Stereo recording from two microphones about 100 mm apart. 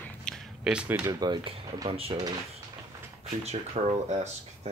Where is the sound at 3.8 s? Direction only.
90° right.